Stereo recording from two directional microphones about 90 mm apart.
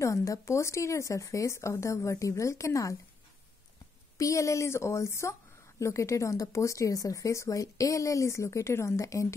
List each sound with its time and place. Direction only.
0.0 s speech: 35° left (ahead or behind)
4.2 s speech: 35° left (ahead or behind)